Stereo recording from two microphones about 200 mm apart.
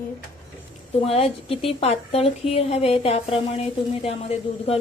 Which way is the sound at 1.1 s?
30° left (ahead or behind).